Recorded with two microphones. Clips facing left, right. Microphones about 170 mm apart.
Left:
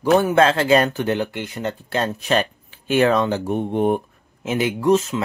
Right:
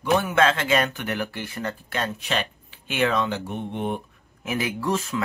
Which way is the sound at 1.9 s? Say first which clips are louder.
Left 8 dB; 40° left (ahead or behind).